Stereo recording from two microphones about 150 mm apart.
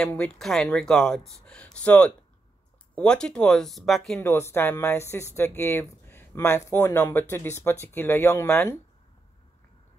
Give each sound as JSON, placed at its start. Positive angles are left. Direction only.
{"t": 0.0, "sound": "speech", "side_deg": 5}
{"t": 4.2, "sound": "speech", "side_deg": 15}